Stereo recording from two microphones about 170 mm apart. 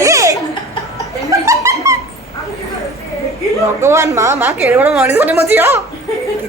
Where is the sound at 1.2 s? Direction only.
20° right (ahead or behind).